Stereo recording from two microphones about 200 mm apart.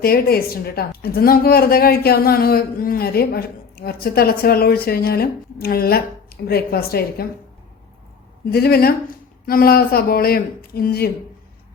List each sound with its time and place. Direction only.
0.0 s speech: 50° left (ahead or behind)
8.4 s speech: 50° left (ahead or behind)